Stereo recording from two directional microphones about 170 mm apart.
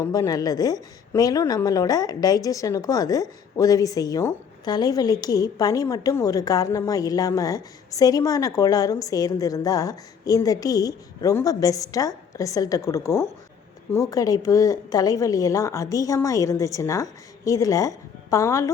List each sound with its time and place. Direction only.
0.0 s a woman's voice: 20° left (ahead or behind)